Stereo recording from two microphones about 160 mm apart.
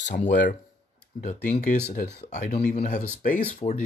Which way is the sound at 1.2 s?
50° left (ahead or behind).